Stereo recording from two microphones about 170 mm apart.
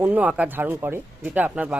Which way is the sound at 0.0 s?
10° right (ahead or behind).